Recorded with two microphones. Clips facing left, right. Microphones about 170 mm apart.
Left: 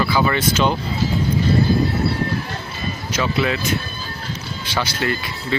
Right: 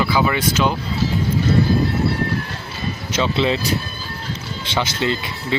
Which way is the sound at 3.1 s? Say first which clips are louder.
Right 2 dB; 25° right (ahead or behind).